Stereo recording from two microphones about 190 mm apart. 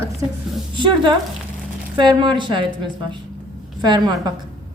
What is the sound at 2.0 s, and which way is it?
A woman's voice, 25° right (ahead or behind).